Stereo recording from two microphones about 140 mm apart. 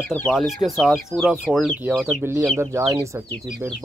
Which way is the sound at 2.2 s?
15° right (ahead or behind).